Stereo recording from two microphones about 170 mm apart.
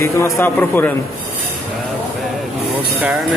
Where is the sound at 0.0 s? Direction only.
15° left (ahead or behind).